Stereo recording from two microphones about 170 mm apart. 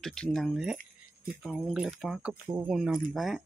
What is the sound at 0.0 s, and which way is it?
Speech, 5° left (ahead or behind).